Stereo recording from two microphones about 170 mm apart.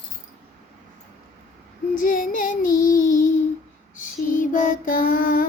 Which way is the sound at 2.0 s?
50° left (ahead or behind).